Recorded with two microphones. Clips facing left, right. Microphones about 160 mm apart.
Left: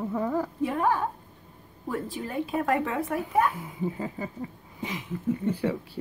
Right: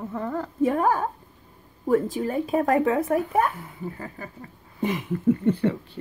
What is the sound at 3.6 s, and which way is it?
Speech, 15° left (ahead or behind).